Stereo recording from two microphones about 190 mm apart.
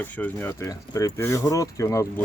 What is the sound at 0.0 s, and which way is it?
Speech, 10° left (ahead or behind).